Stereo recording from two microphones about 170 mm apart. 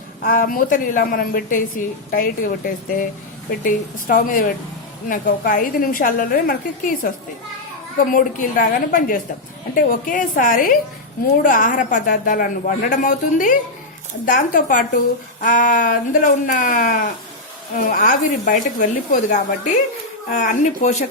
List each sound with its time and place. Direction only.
0.2 s a woman's voice: 55° left (ahead or behind)
3.6 s a woman's voice: 55° left (ahead or behind)